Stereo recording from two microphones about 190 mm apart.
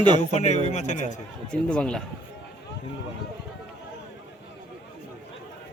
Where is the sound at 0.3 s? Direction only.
35° left (ahead or behind).